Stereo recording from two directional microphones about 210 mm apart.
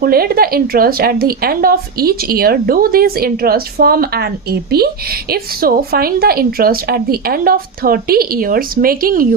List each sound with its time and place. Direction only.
0.0 s speech: 45° right (ahead or behind)